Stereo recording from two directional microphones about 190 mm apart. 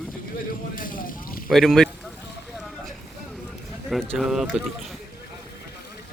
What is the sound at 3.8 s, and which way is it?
Speech, centre (ahead or behind).